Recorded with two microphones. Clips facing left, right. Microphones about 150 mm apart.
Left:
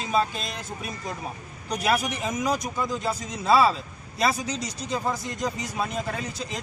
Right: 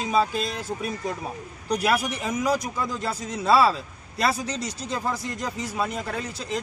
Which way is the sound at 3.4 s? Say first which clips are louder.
Right 1 dB; 5° right (ahead or behind).